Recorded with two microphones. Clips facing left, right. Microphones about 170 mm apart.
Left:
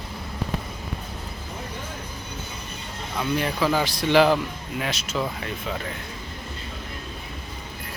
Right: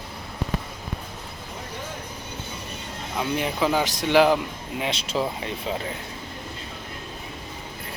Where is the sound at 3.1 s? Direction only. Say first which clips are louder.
Left 1 dB; 15° right (ahead or behind).